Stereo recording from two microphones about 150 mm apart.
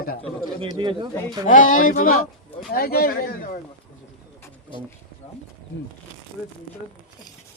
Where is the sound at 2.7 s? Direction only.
85° left; by 3.6 s 60° left (ahead or behind).